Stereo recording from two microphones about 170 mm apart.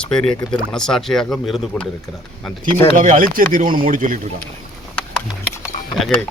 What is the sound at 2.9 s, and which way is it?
Speech, 50° right (ahead or behind).